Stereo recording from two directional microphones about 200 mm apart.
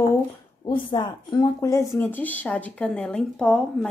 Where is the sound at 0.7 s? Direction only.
25° left (ahead or behind).